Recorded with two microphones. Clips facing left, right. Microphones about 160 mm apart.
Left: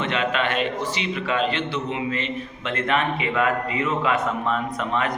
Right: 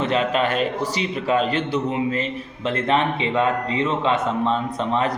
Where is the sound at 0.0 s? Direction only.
35° right (ahead or behind).